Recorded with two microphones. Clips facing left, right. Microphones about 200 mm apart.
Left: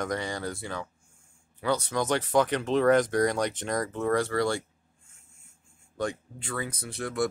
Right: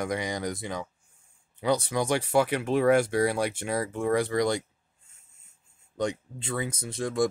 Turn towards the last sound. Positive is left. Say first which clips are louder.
# right 3 dB
turn(degrees=-25)  # may be behind; listen again after turning